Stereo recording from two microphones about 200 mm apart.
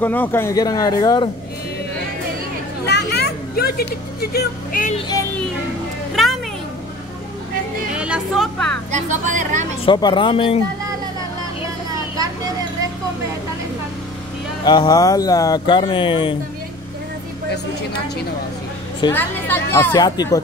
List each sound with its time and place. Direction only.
0.0 s speech: 10° left (ahead or behind)
2.8 s speech: 55° left (ahead or behind)
4.9 s speech: 20° left (ahead or behind)
6.1 s a sound: centre (ahead or behind)
7.9 s speech: 5° right (ahead or behind)
8.9 s a woman's voice: 35° right (ahead or behind)
9.8 s speech: 20° left (ahead or behind)
14.6 s speech: 20° left (ahead or behind)
19.1 s a woman's voice: 10° left (ahead or behind)
19.9 s speech: 20° left (ahead or behind)